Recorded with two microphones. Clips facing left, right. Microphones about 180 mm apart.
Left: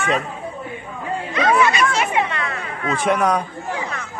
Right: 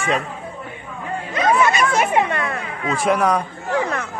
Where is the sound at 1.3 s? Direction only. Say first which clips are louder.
Even; 45° right (ahead or behind).